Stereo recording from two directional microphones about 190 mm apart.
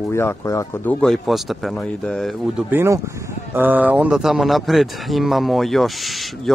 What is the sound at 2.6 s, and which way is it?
Speech, 15° right (ahead or behind).